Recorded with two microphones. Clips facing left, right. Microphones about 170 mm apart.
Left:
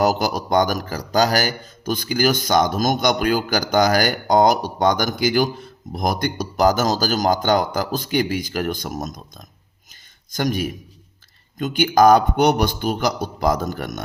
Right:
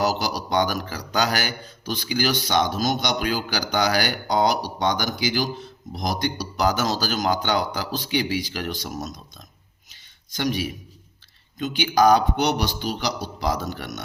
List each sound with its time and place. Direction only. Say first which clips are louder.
0.0 s a man's voice: left 5 dB; 50° left (ahead or behind)